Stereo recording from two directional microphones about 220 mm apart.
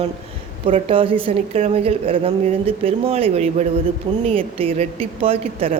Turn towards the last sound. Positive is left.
turn(degrees=-25)  # may be behind; listen again after turning